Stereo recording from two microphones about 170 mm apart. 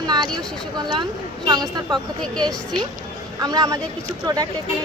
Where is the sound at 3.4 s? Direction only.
20° right (ahead or behind).